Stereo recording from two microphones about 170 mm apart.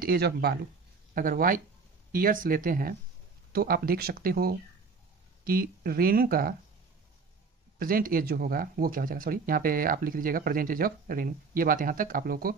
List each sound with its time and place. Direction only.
0.0 s speech: 65° right (ahead or behind)
1.1 s speech: 55° right (ahead or behind)
7.8 s speech: 55° right (ahead or behind)